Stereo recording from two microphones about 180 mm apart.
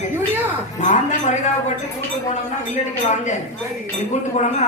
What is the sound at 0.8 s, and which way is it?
Speech, 45° left (ahead or behind).